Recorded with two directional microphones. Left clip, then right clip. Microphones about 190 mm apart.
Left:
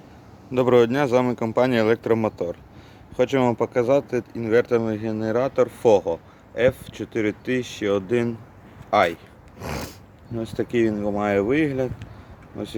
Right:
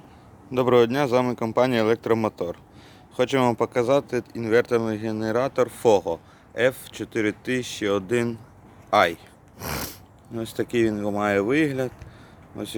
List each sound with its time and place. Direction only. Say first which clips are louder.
0.5 s speech: left 1 dB; 5° right (ahead or behind)
9.6 s a sound: even; 5° right (ahead or behind)
10.3 s speech: left 1 dB; 5° right (ahead or behind)